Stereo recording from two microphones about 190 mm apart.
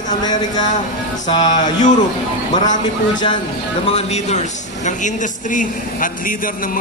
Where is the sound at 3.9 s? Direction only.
35° left (ahead or behind).